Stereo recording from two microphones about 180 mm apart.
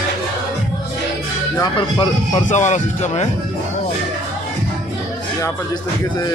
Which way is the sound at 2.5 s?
40° left (ahead or behind).